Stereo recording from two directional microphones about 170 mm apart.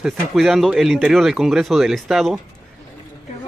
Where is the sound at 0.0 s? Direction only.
Centre (ahead or behind).